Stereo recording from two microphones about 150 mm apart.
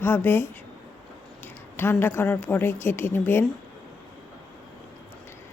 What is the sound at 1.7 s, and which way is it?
A woman's voice, 15° left (ahead or behind).